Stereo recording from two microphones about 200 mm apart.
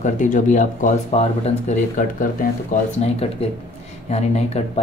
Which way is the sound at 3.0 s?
30° left (ahead or behind).